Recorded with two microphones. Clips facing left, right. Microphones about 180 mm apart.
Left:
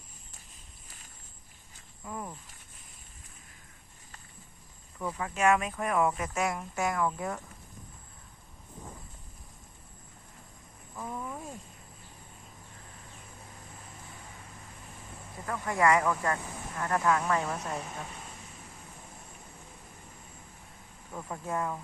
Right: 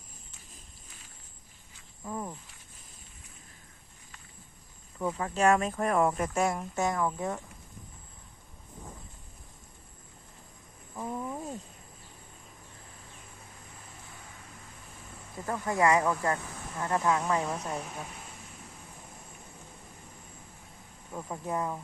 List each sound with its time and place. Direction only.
2.0 s speech: 20° right (ahead or behind)
4.9 s speech: 20° right (ahead or behind)
5.2 s speech: 35° right (ahead or behind)
6.3 s speech: 25° right (ahead or behind)
10.9 s a sound: 20° right (ahead or behind)
15.4 s speech: 25° right (ahead or behind)
17.4 s speech: centre (ahead or behind)
21.1 s speech: 10° right (ahead or behind)